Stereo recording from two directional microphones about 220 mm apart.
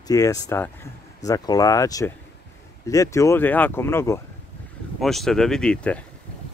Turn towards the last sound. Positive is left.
turn(degrees=5)  # may be behind; listen again after turning